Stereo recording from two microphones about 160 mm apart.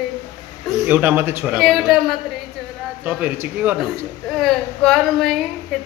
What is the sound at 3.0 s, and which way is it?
Speech, 10° right (ahead or behind).